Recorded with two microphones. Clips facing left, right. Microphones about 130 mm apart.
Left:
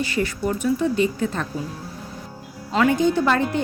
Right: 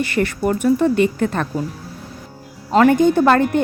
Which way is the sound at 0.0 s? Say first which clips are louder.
Right 4 dB; 60° right (ahead or behind).